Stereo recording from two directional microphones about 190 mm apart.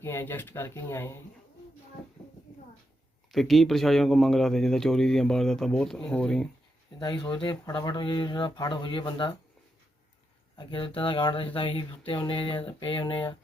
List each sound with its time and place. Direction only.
0.0 s speech: 15° left (ahead or behind)
3.3 s speech: centre (ahead or behind)
7.0 s speech: 20° left (ahead or behind)
10.6 s speech: 25° left (ahead or behind)